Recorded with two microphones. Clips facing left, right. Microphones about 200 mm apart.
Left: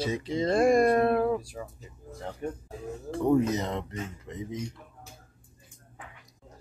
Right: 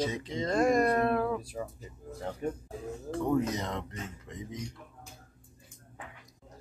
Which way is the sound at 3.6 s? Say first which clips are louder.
Left 4 dB; 30° left (ahead or behind).